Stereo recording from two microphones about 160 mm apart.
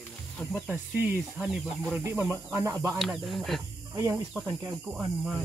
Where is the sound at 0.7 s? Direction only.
10° right (ahead or behind).